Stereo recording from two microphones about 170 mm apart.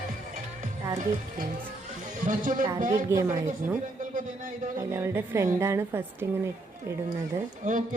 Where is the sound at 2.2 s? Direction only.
50° right (ahead or behind).